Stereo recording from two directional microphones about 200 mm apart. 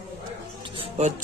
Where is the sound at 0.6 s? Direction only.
30° right (ahead or behind).